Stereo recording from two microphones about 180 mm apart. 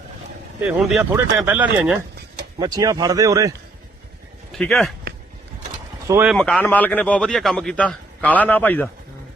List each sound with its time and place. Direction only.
0.7 s speech: centre (ahead or behind)
2.6 s a man's voice: 20° right (ahead or behind)
4.5 s speech: centre (ahead or behind)
6.1 s speech: 15° right (ahead or behind)
6.3 s a man's voice: 5° left (ahead or behind)